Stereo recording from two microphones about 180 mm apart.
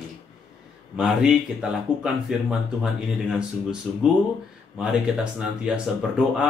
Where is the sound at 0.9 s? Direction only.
5° right (ahead or behind).